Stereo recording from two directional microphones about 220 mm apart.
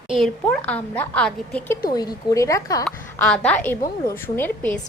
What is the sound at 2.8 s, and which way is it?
A woman's voice, 5° left (ahead or behind).